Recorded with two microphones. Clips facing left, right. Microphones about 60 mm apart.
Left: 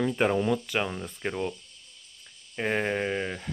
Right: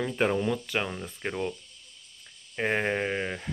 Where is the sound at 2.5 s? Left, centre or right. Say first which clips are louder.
Even; centre.